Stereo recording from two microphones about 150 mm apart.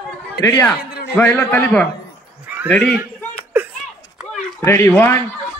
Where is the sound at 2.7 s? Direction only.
5° left (ahead or behind).